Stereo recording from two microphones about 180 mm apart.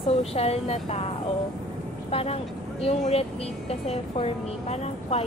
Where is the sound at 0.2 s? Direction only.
35° left (ahead or behind).